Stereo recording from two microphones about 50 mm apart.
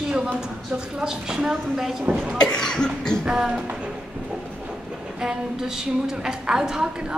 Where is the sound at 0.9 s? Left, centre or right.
Centre.